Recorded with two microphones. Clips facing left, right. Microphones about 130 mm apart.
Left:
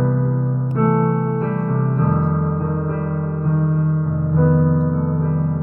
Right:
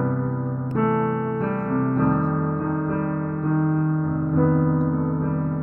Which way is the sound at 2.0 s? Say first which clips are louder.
Left 1 dB; 45° right (ahead or behind).